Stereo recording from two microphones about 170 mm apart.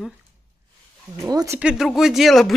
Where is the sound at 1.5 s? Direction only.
5° right (ahead or behind).